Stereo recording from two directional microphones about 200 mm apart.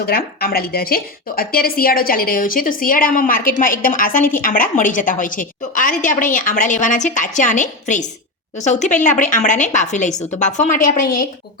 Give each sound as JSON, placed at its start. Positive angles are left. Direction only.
{"t": 0.0, "sound": "a woman's voice", "side_deg": 50}